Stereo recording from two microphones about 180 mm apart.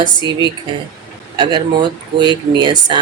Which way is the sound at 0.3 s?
25° right (ahead or behind).